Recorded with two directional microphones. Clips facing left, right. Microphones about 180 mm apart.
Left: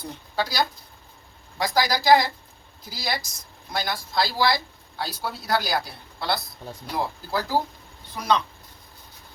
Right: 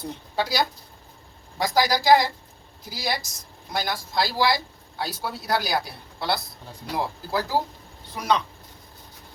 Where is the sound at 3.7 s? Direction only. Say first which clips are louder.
Even; 15° right (ahead or behind).